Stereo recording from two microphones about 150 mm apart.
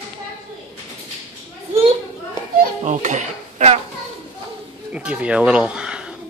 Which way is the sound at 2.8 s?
55° right (ahead or behind).